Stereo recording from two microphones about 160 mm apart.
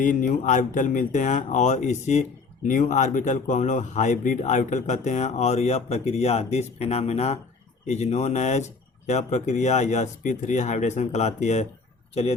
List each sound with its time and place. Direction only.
0.0 s speech: 55° left (ahead or behind)